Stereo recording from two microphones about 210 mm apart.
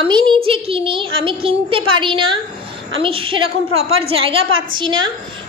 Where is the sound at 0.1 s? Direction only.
20° right (ahead or behind).